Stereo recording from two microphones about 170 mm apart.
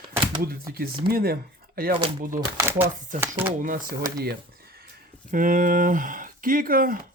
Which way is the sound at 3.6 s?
55° right (ahead or behind).